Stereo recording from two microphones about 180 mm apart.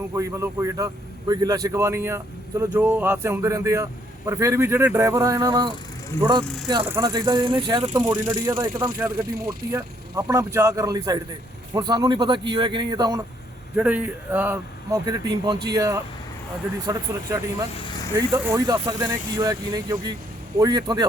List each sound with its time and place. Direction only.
0.1 s speech: 15° right (ahead or behind)
6.4 s speech: centre (ahead or behind)
6.8 s speech: 15° right (ahead or behind)
13.7 s speech: 10° right (ahead or behind)
17.8 s vehicle: 20° left (ahead or behind)
18.3 s speech: 10° right (ahead or behind)
18.6 s speech: 20° right (ahead or behind)